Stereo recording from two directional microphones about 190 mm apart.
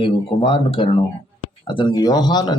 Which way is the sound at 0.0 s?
30° left (ahead or behind).